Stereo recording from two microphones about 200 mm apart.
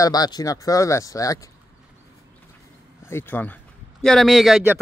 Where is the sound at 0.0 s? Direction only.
20° left (ahead or behind).